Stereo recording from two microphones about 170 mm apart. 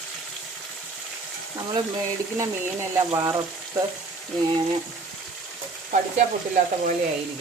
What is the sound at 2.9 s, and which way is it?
Speech, 20° right (ahead or behind).